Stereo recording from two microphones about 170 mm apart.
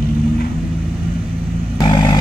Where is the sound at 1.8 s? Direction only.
25° left (ahead or behind).